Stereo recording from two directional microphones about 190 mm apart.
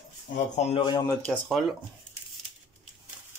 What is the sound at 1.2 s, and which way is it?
Speech, 5° left (ahead or behind).